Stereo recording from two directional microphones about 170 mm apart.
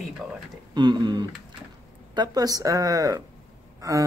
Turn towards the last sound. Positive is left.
turn(degrees=-20)  # may be behind; listen again after turning